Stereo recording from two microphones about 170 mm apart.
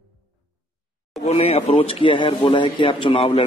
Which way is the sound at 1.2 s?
35° left (ahead or behind).